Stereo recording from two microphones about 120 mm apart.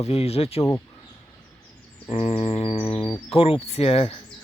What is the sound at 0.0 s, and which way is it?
Speech, 60° left (ahead or behind).